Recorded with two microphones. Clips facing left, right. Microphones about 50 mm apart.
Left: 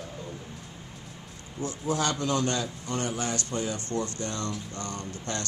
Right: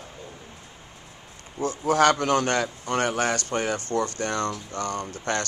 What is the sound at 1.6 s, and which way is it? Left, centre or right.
Speech, right.